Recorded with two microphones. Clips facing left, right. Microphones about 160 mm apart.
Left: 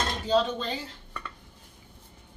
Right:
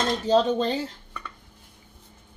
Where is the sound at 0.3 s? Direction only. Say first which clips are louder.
Right 4 dB; 45° right (ahead or behind).